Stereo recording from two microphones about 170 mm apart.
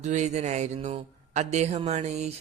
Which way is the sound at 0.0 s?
40° right (ahead or behind).